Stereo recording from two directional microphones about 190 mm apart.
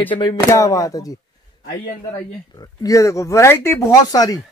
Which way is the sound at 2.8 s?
15° left (ahead or behind).